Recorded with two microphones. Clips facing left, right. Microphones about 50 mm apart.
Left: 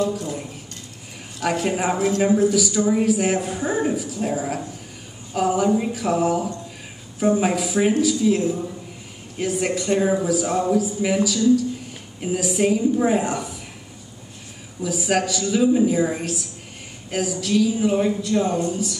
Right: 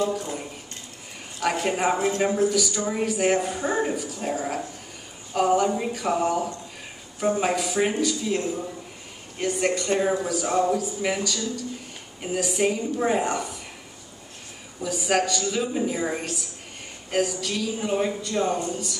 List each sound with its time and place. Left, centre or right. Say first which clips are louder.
1.4 s speech: left 1 dB; centre
2.0 s a man's voice: left 3 dB; right
2.2 s speech: left 6 dB; centre
14.8 s speech: left 2 dB; centre